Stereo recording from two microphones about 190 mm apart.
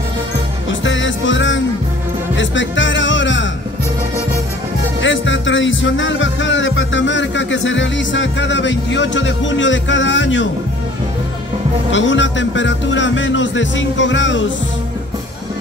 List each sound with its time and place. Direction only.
0.7 s music: 80° left
5.0 s music: 80° left
11.9 s speech: 75° left (ahead or behind)